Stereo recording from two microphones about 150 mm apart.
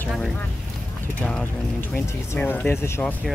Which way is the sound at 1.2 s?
10° left (ahead or behind).